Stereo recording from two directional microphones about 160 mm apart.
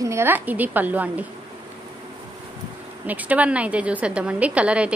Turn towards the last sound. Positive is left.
turn(degrees=-5)  # may be behind; listen again after turning